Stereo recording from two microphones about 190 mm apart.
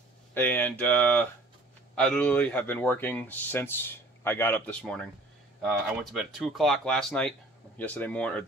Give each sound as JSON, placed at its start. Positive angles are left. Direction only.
{"t": 0.3, "sound": "speech", "side_deg": 10}